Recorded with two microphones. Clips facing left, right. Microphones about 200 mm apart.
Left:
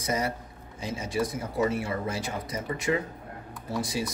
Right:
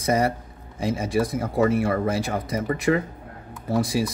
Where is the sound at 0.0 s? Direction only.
55° right (ahead or behind).